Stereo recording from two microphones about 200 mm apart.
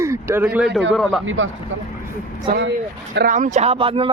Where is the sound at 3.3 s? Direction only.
40° right (ahead or behind).